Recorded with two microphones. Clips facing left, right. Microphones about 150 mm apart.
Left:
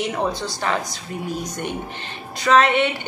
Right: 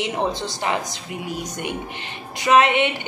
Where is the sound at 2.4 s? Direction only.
15° right (ahead or behind).